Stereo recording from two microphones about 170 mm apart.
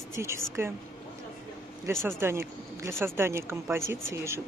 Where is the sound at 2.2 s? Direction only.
15° right (ahead or behind).